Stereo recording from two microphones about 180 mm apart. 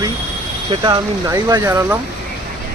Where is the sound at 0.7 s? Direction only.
25° right (ahead or behind).